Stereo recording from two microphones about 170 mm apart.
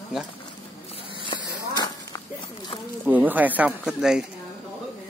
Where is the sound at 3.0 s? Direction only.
10° right (ahead or behind).